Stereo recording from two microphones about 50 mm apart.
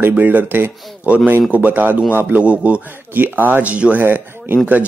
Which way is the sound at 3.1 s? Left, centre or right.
Right.